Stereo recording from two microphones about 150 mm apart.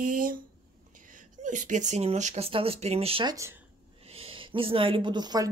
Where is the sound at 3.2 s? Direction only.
20° right (ahead or behind).